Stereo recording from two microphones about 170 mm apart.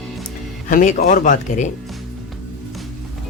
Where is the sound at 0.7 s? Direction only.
50° left (ahead or behind).